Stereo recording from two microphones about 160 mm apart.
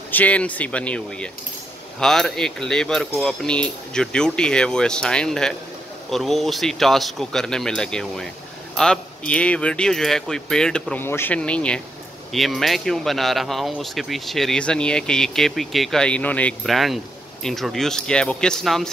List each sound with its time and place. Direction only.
0.1 s speech: 10° left (ahead or behind)